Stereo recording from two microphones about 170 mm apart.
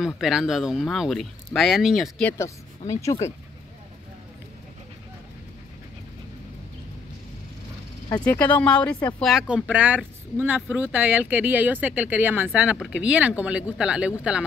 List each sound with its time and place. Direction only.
0.0 s speech: centre (ahead or behind)
2.2 s speech: 15° left (ahead or behind)
8.2 s speech: 10° left (ahead or behind)